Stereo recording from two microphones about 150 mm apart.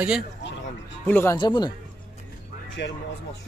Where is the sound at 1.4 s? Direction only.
30° left (ahead or behind).